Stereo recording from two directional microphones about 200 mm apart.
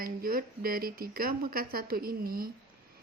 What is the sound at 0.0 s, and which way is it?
Speech, 45° right (ahead or behind).